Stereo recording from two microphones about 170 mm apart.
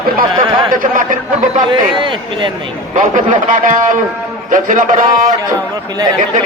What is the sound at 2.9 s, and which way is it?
Speech, 50° right (ahead or behind).